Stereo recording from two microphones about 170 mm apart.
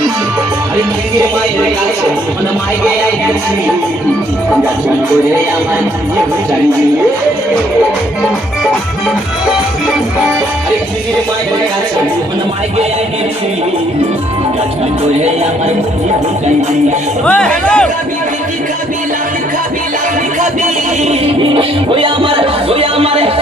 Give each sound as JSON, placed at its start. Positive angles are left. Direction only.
{"t": 17.2, "sound": "speech", "side_deg": 5}
{"t": 21.0, "sound": "music", "side_deg": -35}